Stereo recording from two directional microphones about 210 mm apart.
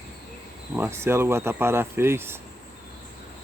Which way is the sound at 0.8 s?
10° right (ahead or behind).